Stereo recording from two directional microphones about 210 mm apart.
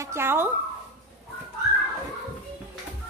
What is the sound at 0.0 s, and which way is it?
Speech, 10° right (ahead or behind).